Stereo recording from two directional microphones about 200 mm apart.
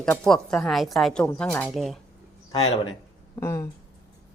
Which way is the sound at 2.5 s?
30° left (ahead or behind).